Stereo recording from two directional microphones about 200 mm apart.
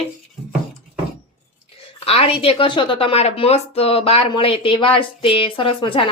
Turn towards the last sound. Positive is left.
turn(degrees=25)  # may be behind; listen again after turning